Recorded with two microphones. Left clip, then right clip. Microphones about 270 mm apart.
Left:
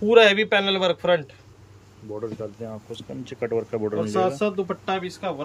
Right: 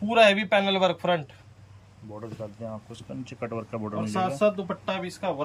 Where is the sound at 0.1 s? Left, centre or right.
Centre.